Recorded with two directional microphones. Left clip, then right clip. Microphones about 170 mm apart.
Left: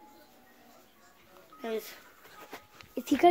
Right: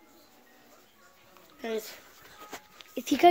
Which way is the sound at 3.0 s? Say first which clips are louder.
Right 2 dB; 15° right (ahead or behind).